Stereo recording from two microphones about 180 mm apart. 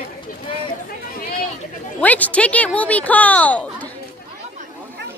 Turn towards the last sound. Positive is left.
turn(degrees=10)  # may be behind; listen again after turning